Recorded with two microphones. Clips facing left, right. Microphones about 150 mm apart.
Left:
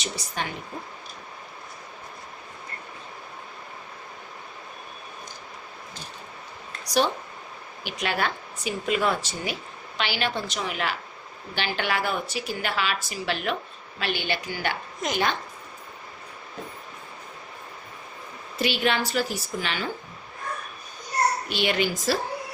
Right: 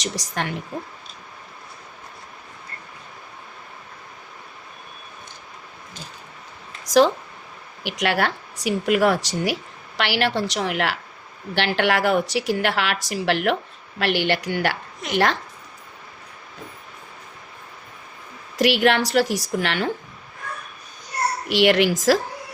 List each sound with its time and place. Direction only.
0.0 s a woman's voice: 85° right
7.9 s a woman's voice: 85° right
18.5 s a woman's voice: 85° right; by 19.9 s 70° right (ahead or behind)
21.4 s a woman's voice: 85° right